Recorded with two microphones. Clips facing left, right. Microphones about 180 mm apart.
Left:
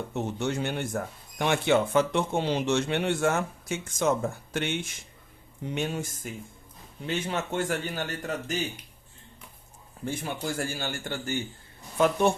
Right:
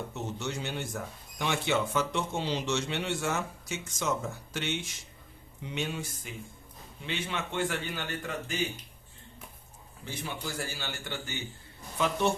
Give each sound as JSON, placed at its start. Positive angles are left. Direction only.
{"t": 0.1, "sound": "a man's voice", "side_deg": 55}
{"t": 10.0, "sound": "a man's voice", "side_deg": 50}